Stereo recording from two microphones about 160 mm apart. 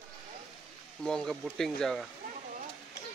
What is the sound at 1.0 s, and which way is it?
Speech, 5° left (ahead or behind).